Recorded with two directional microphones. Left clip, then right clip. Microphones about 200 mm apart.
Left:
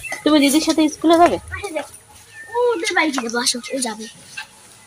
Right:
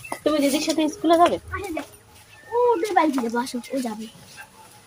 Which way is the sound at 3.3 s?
15° right (ahead or behind).